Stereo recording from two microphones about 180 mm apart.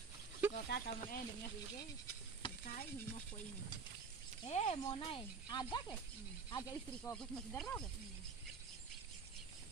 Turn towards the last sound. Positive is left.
turn(degrees=10)  # may be behind; listen again after turning